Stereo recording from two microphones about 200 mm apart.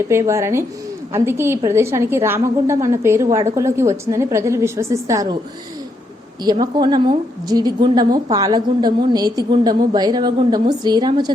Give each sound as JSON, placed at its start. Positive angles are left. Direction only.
{"t": 0.1, "sound": "a woman's voice", "side_deg": -15}
{"t": 6.4, "sound": "a woman's voice", "side_deg": -20}